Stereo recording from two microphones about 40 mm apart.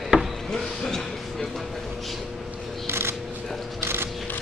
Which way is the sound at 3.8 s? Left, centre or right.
Right.